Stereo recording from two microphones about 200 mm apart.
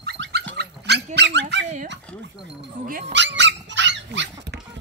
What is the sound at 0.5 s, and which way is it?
Dog, 55° right (ahead or behind).